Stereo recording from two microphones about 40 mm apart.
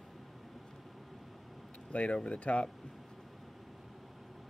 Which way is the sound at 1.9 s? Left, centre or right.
Left.